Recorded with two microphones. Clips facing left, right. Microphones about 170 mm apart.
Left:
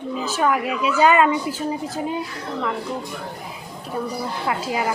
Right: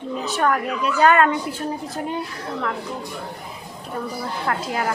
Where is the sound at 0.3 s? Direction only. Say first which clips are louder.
Even; 5° left (ahead or behind).